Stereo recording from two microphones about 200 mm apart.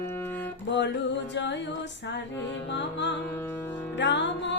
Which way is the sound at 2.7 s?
60° left (ahead or behind).